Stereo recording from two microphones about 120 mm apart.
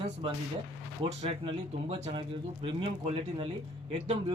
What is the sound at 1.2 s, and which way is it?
A man's voice, 55° right (ahead or behind).